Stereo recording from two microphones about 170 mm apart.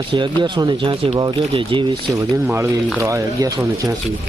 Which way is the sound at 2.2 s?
15° right (ahead or behind).